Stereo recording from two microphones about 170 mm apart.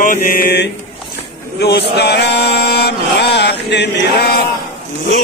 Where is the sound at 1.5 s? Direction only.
75° left (ahead or behind).